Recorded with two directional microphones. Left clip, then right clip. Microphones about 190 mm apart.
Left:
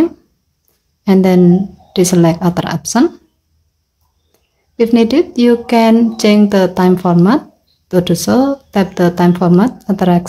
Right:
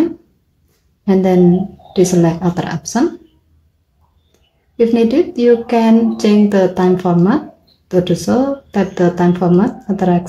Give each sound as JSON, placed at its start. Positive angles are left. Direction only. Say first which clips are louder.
{"t": 1.0, "sound": "speech", "louder": "left 1 dB", "side_deg": 30}
{"t": 4.3, "sound": "speech", "louder": "left 1 dB", "side_deg": 30}